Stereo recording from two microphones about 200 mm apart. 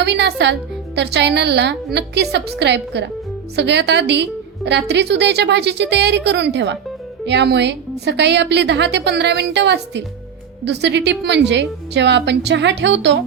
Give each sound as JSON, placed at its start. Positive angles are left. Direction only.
{"t": 0.0, "sound": "a woman's voice", "side_deg": -60}